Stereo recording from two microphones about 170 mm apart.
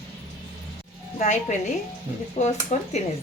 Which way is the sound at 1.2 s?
45° left (ahead or behind).